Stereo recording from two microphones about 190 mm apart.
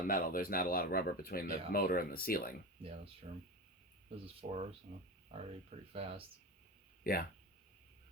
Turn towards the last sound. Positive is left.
turn(degrees=50)  # may be behind; listen again after turning